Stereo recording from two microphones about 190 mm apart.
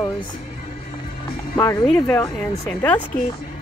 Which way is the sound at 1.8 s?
5° left (ahead or behind).